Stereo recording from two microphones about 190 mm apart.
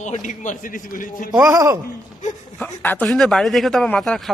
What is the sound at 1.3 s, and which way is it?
Speech, 20° right (ahead or behind).